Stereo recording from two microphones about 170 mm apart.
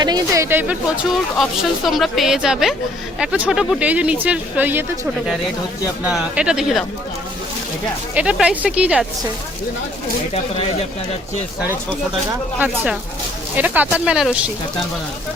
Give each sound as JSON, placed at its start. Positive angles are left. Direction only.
{"t": 0.0, "sound": "speech", "side_deg": -25}
{"t": 0.4, "sound": "speech", "side_deg": -15}
{"t": 1.4, "sound": "a woman's voice", "side_deg": 0}
{"t": 6.1, "sound": "a woman's voice", "side_deg": -5}
{"t": 8.1, "sound": "speech", "side_deg": -5}
{"t": 12.5, "sound": "a woman's voice", "side_deg": -10}